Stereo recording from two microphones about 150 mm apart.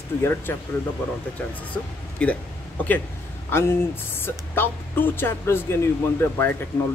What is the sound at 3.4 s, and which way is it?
Speech, 15° left (ahead or behind).